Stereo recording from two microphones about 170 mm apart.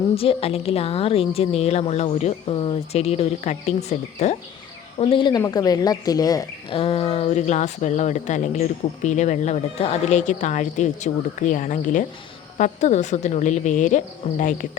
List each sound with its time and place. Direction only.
0.1 s a woman's voice: 35° left (ahead or behind)
6.7 s speech: 35° left (ahead or behind)